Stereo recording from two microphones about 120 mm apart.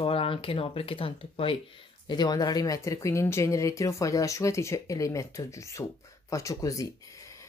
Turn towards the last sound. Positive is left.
turn(degrees=25)  # may be behind; listen again after turning